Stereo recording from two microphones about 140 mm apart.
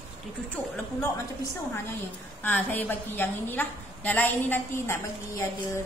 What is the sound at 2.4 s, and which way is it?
A woman's voice, 15° left (ahead or behind).